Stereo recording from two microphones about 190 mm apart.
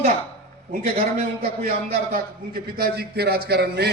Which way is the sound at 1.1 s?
40° right (ahead or behind).